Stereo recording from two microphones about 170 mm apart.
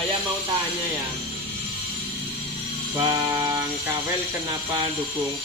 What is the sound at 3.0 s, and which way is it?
Music, 20° right (ahead or behind).